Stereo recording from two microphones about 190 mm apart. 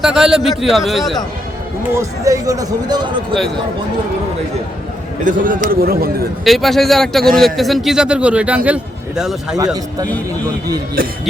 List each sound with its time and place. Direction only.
0.0 s a man's voice: 5° right (ahead or behind)
1.9 s speech: 15° right (ahead or behind)
5.2 s a man's voice: 45° right (ahead or behind)
6.4 s a man's voice: centre (ahead or behind)
11.0 s a sound: 50° right (ahead or behind)